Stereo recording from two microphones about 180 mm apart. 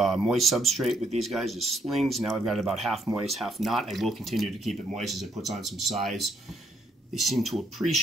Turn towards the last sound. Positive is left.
turn(degrees=0)  # may be behind; listen again after turning